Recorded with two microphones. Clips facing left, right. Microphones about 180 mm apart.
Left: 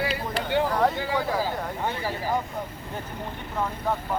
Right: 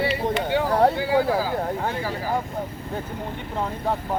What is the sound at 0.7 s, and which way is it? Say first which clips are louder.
Speech: right 5 dB; 35° right (ahead or behind).